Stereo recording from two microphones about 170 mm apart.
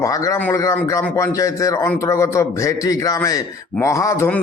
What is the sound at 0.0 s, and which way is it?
A man's voice, 20° left (ahead or behind).